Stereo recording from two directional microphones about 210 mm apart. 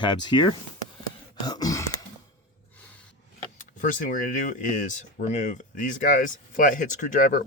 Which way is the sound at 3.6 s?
40° left (ahead or behind).